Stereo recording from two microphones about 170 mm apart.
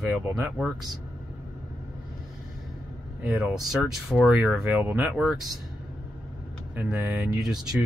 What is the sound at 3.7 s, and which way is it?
Speech, 5° right (ahead or behind).